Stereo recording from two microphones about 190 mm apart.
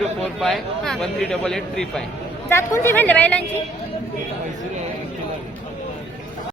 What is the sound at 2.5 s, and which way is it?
Speech, 15° left (ahead or behind).